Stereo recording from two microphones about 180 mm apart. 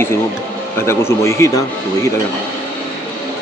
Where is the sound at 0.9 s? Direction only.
15° left (ahead or behind).